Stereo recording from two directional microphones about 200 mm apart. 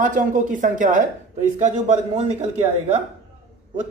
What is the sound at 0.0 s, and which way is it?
Speech, 40° right (ahead or behind).